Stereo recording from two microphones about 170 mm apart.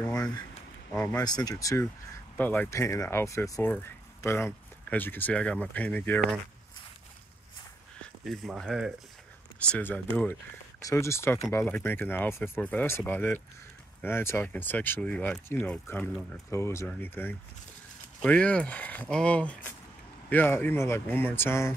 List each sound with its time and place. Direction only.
0.1 s speech: 20° left (ahead or behind)
8.3 s speech: centre (ahead or behind)
9.7 s speech: 10° left (ahead or behind)